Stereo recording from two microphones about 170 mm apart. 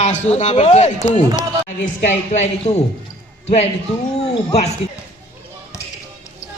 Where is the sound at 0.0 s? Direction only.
40° left (ahead or behind).